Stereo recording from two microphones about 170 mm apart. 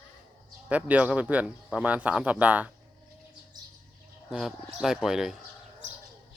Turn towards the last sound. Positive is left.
turn(degrees=-5)  # may be behind; listen again after turning